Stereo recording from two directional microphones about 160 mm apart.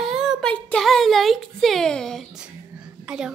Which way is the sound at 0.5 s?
5° left (ahead or behind).